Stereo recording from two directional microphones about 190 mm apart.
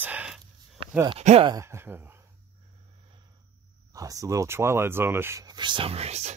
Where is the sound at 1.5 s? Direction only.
15° right (ahead or behind).